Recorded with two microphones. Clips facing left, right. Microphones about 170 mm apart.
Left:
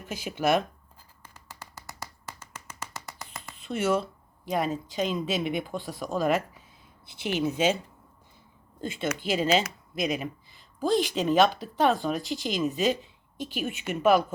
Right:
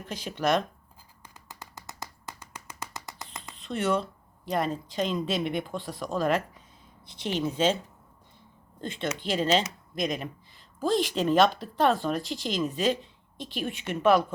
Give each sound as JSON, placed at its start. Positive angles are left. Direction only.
{"t": 0.0, "sound": "speech", "side_deg": 5}
{"t": 1.2, "sound": "finger snapping", "side_deg": -20}
{"t": 3.5, "sound": "speech", "side_deg": 5}
{"t": 8.8, "sound": "speech", "side_deg": 5}